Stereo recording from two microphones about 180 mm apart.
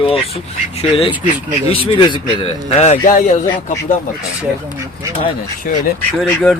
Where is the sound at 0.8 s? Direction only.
30° left (ahead or behind).